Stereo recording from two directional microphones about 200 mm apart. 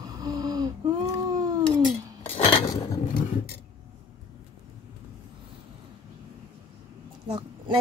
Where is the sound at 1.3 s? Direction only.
20° right (ahead or behind).